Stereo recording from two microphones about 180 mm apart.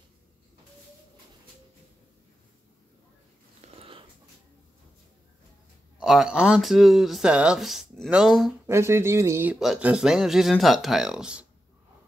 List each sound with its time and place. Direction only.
3.7 s sniff: 30° right (ahead or behind)
5.9 s speech: 5° right (ahead or behind)
8.6 s speech: 15° right (ahead or behind)